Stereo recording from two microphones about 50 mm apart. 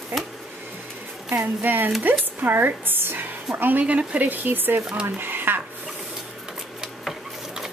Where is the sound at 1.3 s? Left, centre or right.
Right.